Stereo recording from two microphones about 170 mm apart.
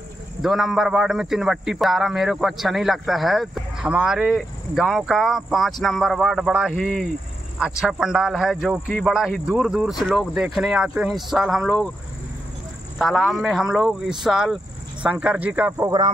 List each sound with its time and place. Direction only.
0.4 s a man's voice: centre (ahead or behind)
13.0 s a man's voice: centre (ahead or behind)